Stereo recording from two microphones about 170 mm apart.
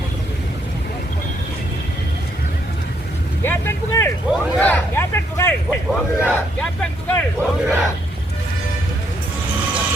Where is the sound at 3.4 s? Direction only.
15° left (ahead or behind).